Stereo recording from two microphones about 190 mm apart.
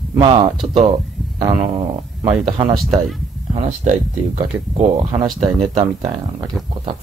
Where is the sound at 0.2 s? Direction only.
20° right (ahead or behind).